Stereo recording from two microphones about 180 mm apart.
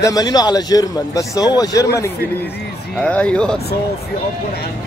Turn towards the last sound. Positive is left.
turn(degrees=5)  # may be behind; listen again after turning